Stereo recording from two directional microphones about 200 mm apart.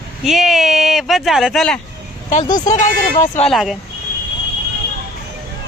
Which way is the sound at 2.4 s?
20° left (ahead or behind).